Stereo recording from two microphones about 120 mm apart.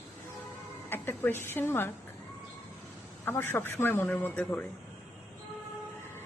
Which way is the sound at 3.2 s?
15° left (ahead or behind).